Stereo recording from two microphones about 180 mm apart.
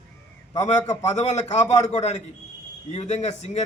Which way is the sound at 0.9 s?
40° left (ahead or behind).